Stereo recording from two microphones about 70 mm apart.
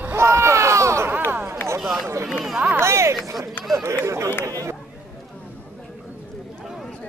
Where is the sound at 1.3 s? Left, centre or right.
Right.